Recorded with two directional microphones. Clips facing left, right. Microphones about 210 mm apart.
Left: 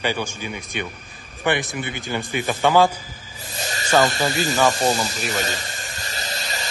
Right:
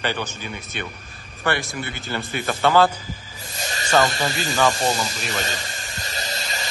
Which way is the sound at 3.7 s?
Centre (ahead or behind).